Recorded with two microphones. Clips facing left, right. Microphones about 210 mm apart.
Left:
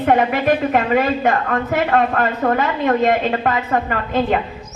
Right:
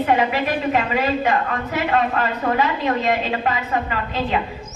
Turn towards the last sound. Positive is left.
turn(degrees=50)  # may be behind; listen again after turning